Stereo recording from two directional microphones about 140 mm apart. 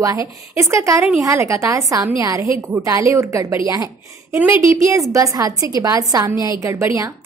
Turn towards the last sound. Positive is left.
turn(degrees=-20)  # may be behind; listen again after turning